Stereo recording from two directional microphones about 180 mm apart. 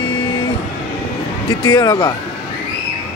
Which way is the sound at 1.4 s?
25° left (ahead or behind).